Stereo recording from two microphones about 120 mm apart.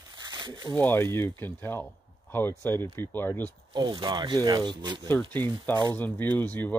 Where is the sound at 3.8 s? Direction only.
40° right (ahead or behind).